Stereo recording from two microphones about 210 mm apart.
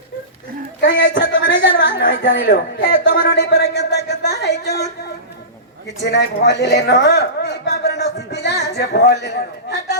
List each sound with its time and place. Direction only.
0.9 s speech: 55° left (ahead or behind)
6.0 s a woman's voice: 50° left (ahead or behind)